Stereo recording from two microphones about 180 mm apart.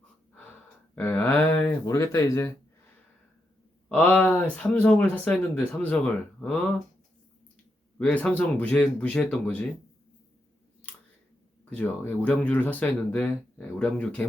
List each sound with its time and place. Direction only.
0.9 s speech: 10° left (ahead or behind)
3.8 s speech: 5° left (ahead or behind)
7.9 s speech: 5° left (ahead or behind)
10.8 s a sound: 10° left (ahead or behind)
11.7 s speech: 10° left (ahead or behind)